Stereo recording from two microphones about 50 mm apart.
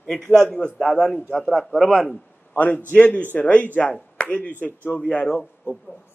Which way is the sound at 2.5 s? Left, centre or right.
Left.